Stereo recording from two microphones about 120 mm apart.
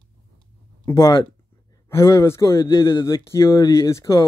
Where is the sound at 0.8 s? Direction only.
25° left (ahead or behind).